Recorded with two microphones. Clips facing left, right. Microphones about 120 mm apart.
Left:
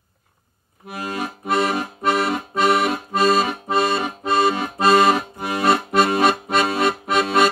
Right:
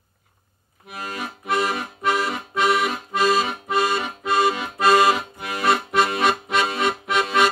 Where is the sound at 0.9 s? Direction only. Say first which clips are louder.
Left 4 dB; 40° left (ahead or behind).